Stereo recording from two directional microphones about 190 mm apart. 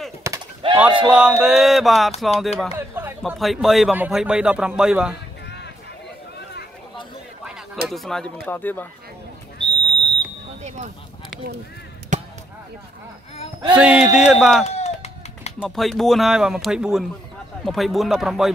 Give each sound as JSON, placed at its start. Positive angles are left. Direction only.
{"t": 0.2, "sound": "a sound", "side_deg": -15}
{"t": 0.7, "sound": "speech", "side_deg": -5}
{"t": 7.9, "sound": "speech", "side_deg": 0}
{"t": 9.6, "sound": "a sound", "side_deg": -25}
{"t": 13.7, "sound": "speech", "side_deg": -5}
{"t": 14.7, "sound": "run", "side_deg": 35}
{"t": 15.6, "sound": "speech", "side_deg": 0}